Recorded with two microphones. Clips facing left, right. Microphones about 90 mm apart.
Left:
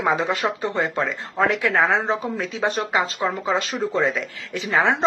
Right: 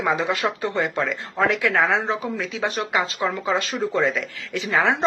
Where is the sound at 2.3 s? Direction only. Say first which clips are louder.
Left 2 dB; 35° left (ahead or behind).